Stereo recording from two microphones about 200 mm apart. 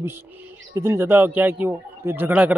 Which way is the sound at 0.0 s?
10° right (ahead or behind).